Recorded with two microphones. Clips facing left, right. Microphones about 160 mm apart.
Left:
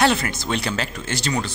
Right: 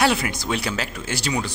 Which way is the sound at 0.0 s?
10° right (ahead or behind).